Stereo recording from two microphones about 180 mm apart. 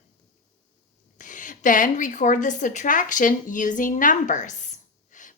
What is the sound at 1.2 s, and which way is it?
A woman's voice, 45° left (ahead or behind).